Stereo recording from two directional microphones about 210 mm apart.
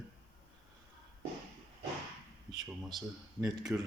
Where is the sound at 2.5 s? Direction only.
20° right (ahead or behind).